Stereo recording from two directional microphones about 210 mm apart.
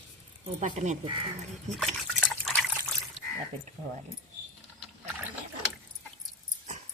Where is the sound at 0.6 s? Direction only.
35° right (ahead or behind).